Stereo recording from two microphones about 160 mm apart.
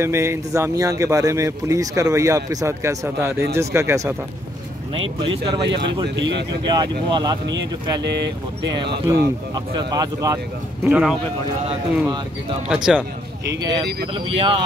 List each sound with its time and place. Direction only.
0.0 s speech: 15° right (ahead or behind)
4.9 s speech: 35° right (ahead or behind)
8.0 s speech: 90° right
9.1 s speech: 20° right (ahead or behind)
10.8 s speech: 10° right (ahead or behind)
12.6 s speech: 5° right (ahead or behind)
14.1 s speech: 35° right (ahead or behind)